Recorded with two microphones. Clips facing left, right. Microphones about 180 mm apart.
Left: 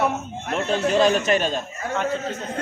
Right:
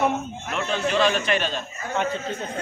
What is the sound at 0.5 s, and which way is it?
A man's voice, 40° left (ahead or behind).